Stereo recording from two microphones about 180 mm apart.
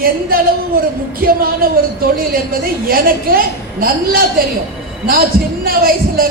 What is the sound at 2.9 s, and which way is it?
A woman's voice, 55° right (ahead or behind).